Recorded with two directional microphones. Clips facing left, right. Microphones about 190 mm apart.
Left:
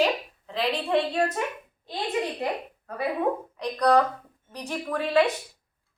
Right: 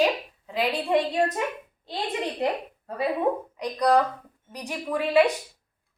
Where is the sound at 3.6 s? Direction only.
10° right (ahead or behind).